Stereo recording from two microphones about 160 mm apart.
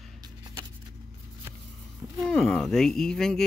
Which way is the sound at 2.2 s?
5° left (ahead or behind).